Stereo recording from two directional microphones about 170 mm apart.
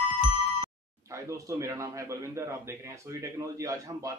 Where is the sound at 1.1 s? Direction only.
20° right (ahead or behind).